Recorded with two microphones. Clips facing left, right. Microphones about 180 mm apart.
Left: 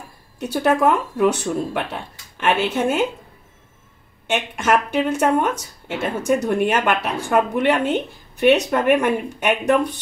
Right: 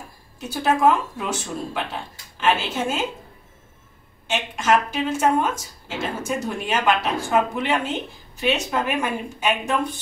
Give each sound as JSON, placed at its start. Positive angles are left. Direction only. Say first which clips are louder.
{"t": 0.4, "sound": "speech", "louder": "left 2 dB", "side_deg": 60}
{"t": 4.3, "sound": "speech", "louder": "left 1 dB", "side_deg": 60}